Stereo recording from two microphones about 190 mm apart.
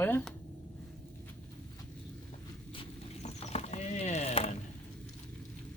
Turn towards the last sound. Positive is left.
turn(degrees=35)  # may be behind; listen again after turning